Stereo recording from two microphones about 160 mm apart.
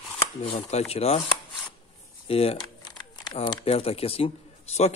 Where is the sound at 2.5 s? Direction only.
25° left (ahead or behind).